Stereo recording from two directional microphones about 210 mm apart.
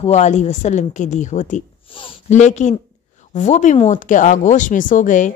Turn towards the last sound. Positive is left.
turn(degrees=35)  # may be behind; listen again after turning